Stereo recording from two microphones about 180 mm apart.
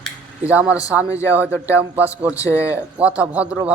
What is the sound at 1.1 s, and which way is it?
Speech, 15° left (ahead or behind).